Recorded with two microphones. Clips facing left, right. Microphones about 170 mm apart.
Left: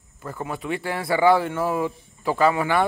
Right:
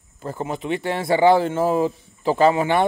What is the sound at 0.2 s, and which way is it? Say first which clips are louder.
A man's voice: right 4 dB; 25° right (ahead or behind).